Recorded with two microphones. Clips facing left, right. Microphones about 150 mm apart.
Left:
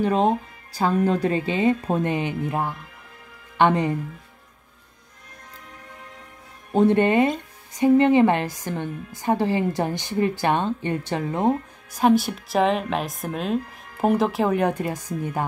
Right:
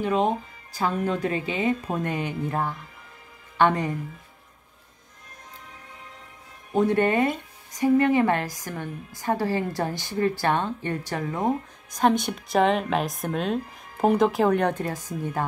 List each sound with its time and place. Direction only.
0.0 s speech: 35° left (ahead or behind); by 3.9 s 20° left (ahead or behind)
6.7 s a woman's voice: 25° left (ahead or behind)
11.9 s speech: 5° left (ahead or behind)